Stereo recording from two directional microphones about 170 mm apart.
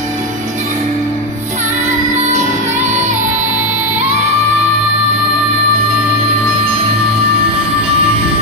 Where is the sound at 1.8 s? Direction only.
45° right (ahead or behind).